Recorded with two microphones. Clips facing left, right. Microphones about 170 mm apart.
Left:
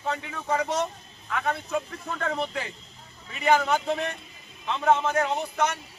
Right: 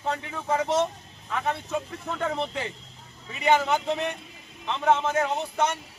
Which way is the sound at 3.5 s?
Centre (ahead or behind).